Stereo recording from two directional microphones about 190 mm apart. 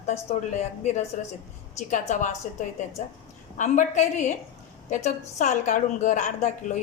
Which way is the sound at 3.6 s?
40° left (ahead or behind).